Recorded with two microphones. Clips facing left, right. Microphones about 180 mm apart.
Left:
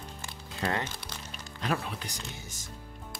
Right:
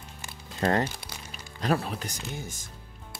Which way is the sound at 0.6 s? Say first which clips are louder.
Right 6 dB; 45° right (ahead or behind).